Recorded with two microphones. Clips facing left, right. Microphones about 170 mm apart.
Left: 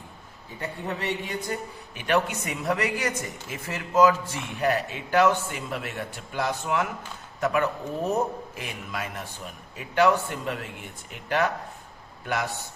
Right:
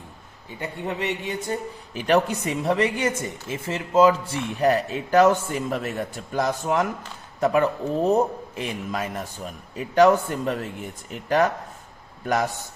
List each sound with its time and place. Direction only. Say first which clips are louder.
0.6 s speech: right 3 dB; 15° right (ahead or behind)
2.0 s speech: right 4 dB; 35° right (ahead or behind)